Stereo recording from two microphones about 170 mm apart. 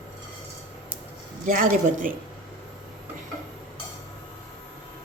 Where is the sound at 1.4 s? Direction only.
55° right (ahead or behind).